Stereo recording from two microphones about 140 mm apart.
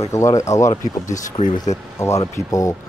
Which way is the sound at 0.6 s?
65° left (ahead or behind).